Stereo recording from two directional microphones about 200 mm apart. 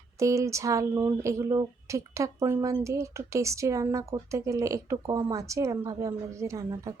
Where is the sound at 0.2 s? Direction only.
15° right (ahead or behind).